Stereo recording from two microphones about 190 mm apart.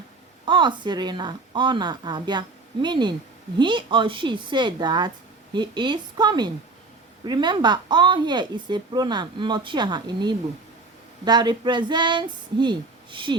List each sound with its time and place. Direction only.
0.4 s speech: 25° right (ahead or behind)